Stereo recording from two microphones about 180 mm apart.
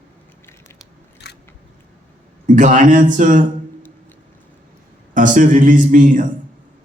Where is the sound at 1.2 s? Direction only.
65° left (ahead or behind).